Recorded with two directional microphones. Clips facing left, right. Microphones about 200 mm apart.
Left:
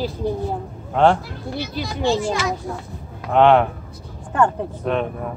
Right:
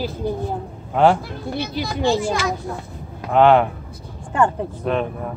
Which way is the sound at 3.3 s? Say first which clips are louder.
Even; centre (ahead or behind).